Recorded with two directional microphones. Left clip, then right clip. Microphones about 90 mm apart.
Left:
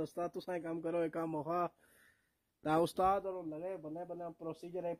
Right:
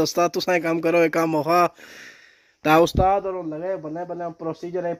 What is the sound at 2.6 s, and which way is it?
Speech, 15° left (ahead or behind).